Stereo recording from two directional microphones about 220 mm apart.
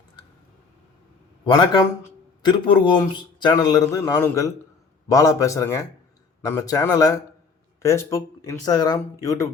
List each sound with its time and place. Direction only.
1.5 s speech: 20° left (ahead or behind)